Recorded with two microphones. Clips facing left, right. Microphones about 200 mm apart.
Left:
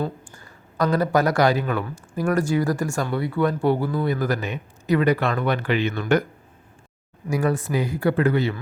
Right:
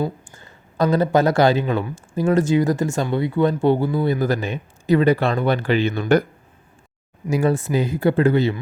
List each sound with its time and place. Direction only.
0.3 s speech: 25° right (ahead or behind)
7.3 s speech: 25° right (ahead or behind)